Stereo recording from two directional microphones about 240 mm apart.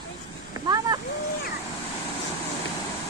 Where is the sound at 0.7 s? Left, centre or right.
Centre.